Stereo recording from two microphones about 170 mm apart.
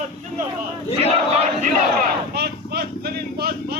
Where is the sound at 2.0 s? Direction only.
70° right (ahead or behind).